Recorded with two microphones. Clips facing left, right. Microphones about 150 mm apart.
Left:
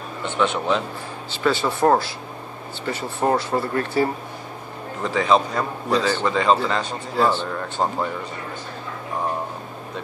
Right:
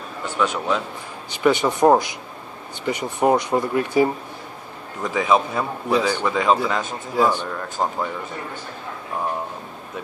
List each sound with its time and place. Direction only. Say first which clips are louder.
0.4 s a man's voice: left 1 dB; 5° right (ahead or behind)
1.3 s a man's voice: right 3 dB; 15° right (ahead or behind)
7.8 s a man's voice: left 1 dB; centre (ahead or behind)